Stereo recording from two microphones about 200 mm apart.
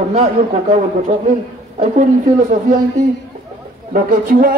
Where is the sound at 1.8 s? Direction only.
40° right (ahead or behind).